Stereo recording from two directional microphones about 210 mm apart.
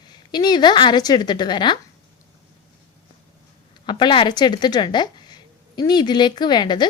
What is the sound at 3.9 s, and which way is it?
A woman's voice, 20° left (ahead or behind).